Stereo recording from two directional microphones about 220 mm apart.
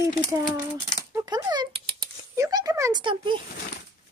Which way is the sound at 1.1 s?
15° right (ahead or behind).